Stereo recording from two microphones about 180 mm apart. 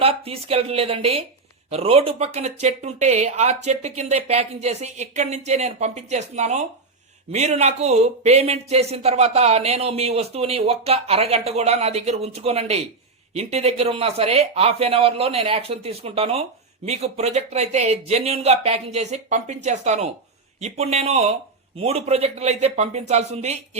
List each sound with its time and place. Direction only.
0.0 s speech: 35° right (ahead or behind)